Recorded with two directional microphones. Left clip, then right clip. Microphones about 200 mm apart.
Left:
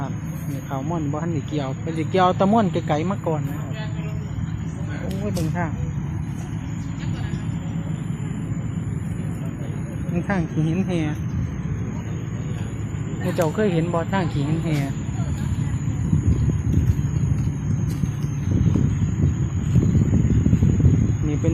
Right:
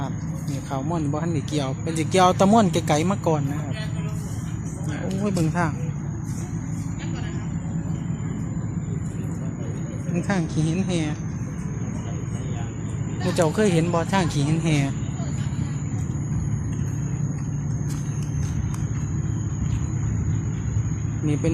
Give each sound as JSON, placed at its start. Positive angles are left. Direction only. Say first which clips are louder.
{"t": 0.7, "sound": "speech", "louder": "even", "side_deg": -5}
{"t": 5.2, "sound": "speech", "louder": "right 3 dB", "side_deg": -30}
{"t": 10.2, "sound": "speech", "louder": "left 1 dB", "side_deg": 0}
{"t": 13.3, "sound": "speech", "louder": "right 1 dB", "side_deg": -10}